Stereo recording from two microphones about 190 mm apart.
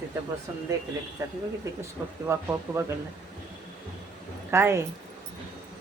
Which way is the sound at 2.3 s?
15° right (ahead or behind).